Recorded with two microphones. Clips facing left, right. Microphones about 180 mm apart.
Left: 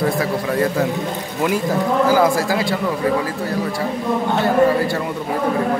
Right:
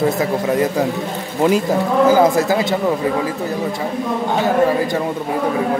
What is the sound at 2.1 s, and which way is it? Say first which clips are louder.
Speech: right 3 dB; 20° right (ahead or behind).